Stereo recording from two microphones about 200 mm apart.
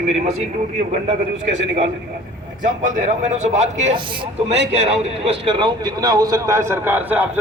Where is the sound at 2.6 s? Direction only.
40° right (ahead or behind).